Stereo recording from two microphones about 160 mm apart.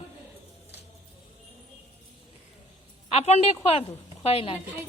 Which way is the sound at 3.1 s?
40° left (ahead or behind).